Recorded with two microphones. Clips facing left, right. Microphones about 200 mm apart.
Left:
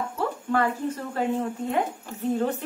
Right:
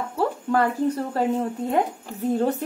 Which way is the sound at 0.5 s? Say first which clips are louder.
Right 3 dB; 40° right (ahead or behind).